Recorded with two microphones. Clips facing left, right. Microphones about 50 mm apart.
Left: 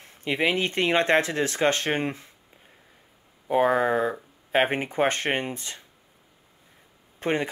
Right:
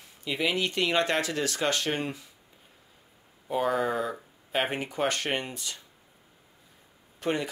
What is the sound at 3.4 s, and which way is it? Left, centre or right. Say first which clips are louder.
Speech: left 5 dB; left.